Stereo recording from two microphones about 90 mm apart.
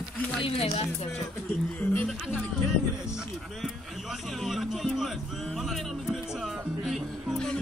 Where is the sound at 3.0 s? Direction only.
5° right (ahead or behind).